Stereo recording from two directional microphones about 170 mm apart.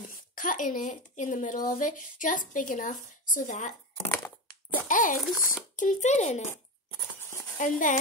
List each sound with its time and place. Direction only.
0.4 s a woman's voice: 50° left (ahead or behind)
4.8 s a woman's voice: 50° left (ahead or behind)
5.2 s a child's voice: centre (ahead or behind)
5.8 s a woman's voice: 45° left (ahead or behind)
7.5 s a woman's voice: 50° left (ahead or behind)